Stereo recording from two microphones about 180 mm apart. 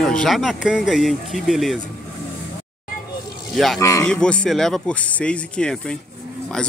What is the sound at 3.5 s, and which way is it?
Speech, centre (ahead or behind).